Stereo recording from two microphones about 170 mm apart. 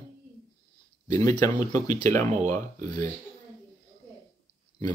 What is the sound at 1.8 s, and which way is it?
Speech, 45° right (ahead or behind).